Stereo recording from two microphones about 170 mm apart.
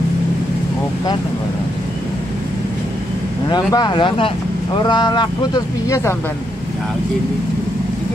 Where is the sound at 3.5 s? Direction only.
25° left (ahead or behind).